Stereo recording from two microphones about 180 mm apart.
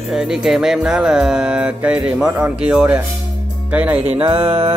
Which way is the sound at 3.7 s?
10° right (ahead or behind).